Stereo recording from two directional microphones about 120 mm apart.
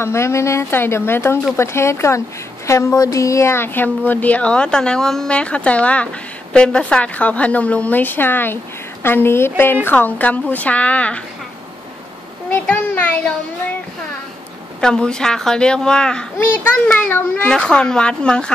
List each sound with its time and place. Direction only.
0.0 s a woman's voice: 25° left (ahead or behind)
12.4 s a child's voice: 15° left (ahead or behind)
14.8 s a woman's voice: 5° left (ahead or behind)